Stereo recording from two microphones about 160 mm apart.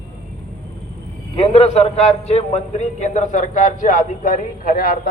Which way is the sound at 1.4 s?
40° left (ahead or behind).